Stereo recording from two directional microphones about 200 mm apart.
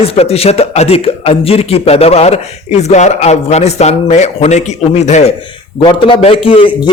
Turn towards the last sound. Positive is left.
turn(degrees=25)  # may be behind; listen again after turning